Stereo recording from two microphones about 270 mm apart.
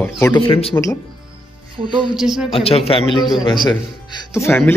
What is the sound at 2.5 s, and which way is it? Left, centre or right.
Speech, left.